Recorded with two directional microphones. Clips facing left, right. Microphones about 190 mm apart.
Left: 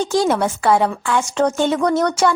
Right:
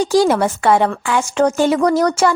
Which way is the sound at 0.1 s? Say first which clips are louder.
Right 4 dB; centre (ahead or behind).